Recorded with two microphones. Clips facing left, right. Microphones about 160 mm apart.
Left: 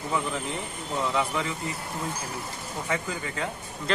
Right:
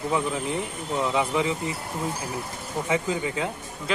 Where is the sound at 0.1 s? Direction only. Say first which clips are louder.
Right 2 dB; 15° right (ahead or behind).